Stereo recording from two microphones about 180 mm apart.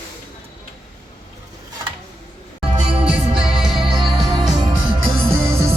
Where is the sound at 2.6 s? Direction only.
35° right (ahead or behind).